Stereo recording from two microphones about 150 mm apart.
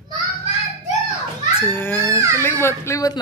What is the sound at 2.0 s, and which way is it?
Speech, 20° right (ahead or behind).